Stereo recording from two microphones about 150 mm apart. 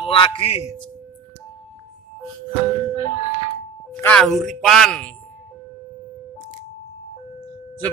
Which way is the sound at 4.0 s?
5° left (ahead or behind).